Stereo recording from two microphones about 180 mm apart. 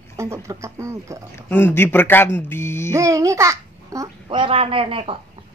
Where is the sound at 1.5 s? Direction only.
10° left (ahead or behind).